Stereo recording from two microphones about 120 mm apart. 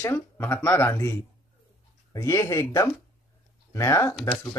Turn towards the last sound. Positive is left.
turn(degrees=25)  # may be behind; listen again after turning